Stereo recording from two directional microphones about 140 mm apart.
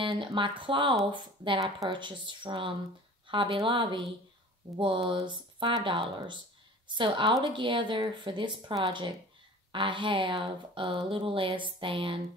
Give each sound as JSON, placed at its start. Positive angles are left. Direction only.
{"t": 0.0, "sound": "speech", "side_deg": -35}